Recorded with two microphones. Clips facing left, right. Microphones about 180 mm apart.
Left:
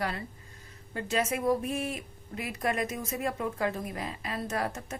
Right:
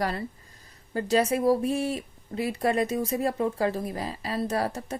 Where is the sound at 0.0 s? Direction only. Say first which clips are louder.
Right 5 dB; 35° right (ahead or behind).